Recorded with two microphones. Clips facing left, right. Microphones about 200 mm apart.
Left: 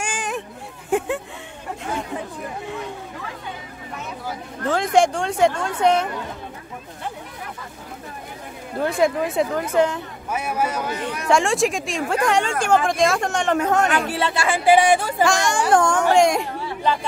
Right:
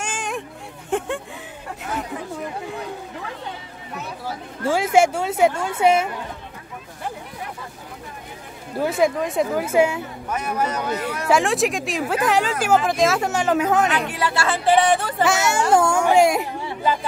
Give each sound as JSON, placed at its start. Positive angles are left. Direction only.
{"t": 0.0, "sound": "a sound", "side_deg": 5}
{"t": 0.8, "sound": "speech", "side_deg": 5}
{"t": 4.6, "sound": "a woman's voice", "side_deg": -5}
{"t": 8.7, "sound": "a woman's voice", "side_deg": -5}
{"t": 10.3, "sound": "speech", "side_deg": 10}
{"t": 11.2, "sound": "speech", "side_deg": 0}
{"t": 13.8, "sound": "speech", "side_deg": 45}
{"t": 14.1, "sound": "speech", "side_deg": 20}
{"t": 15.2, "sound": "speech", "side_deg": -5}